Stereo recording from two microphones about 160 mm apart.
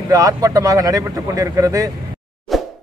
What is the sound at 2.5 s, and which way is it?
Plop, centre (ahead or behind).